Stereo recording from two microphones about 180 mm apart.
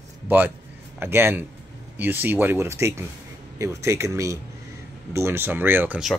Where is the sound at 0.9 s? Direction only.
10° right (ahead or behind).